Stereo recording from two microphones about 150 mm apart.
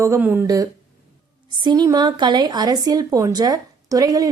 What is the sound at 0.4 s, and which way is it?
A woman's voice, 25° right (ahead or behind).